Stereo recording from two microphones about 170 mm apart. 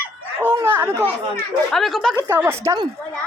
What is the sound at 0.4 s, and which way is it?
Speech, 10° right (ahead or behind).